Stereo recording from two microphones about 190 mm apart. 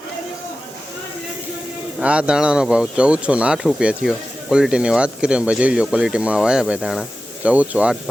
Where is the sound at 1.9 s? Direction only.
5° right (ahead or behind).